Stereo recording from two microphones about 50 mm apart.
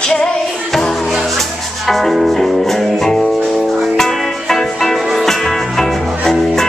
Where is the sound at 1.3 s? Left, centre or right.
Centre.